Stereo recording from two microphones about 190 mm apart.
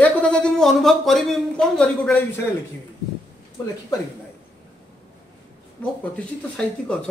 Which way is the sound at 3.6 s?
20° left (ahead or behind).